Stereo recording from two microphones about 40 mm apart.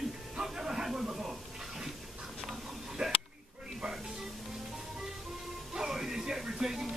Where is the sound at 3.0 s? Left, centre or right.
Centre.